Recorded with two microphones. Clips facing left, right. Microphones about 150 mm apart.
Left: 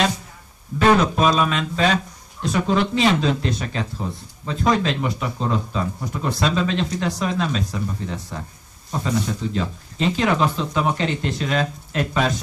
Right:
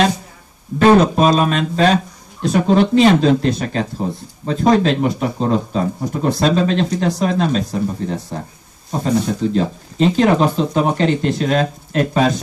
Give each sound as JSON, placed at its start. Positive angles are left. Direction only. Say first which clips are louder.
{"t": 1.1, "sound": "speech", "louder": "right 5 dB", "side_deg": -40}